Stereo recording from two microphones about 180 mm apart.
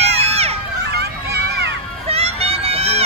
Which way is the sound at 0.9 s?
65° right (ahead or behind).